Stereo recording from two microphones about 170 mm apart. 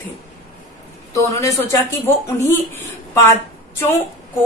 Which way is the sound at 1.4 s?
15° left (ahead or behind).